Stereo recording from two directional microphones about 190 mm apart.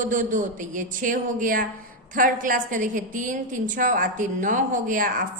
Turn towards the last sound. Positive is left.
turn(degrees=-45)  # may be behind; listen again after turning